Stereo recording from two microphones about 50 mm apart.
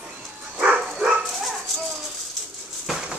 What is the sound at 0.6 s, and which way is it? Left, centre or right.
Dog, centre.